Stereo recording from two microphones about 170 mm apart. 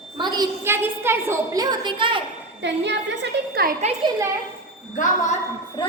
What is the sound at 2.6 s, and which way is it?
Speech, 90° right.